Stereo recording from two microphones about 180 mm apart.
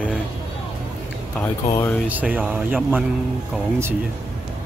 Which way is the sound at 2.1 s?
10° right (ahead or behind).